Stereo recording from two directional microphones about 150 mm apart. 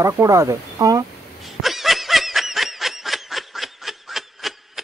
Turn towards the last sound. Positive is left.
turn(degrees=0)  # may be behind; listen again after turning